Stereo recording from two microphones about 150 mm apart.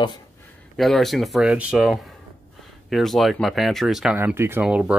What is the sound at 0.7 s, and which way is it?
Speech, centre (ahead or behind).